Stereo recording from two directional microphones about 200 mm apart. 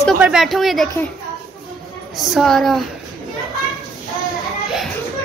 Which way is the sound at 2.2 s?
Centre (ahead or behind).